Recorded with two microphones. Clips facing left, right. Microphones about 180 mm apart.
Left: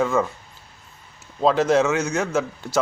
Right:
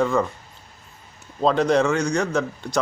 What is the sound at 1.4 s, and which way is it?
A man's voice, 5° left (ahead or behind).